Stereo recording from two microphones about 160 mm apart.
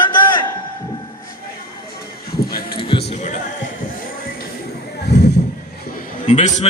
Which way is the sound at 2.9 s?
30° left (ahead or behind).